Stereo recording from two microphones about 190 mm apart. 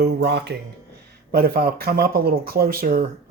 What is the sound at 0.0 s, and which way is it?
Speech, 60° right (ahead or behind).